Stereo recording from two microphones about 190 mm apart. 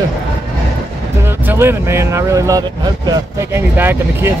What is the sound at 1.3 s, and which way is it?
Speech, 10° right (ahead or behind).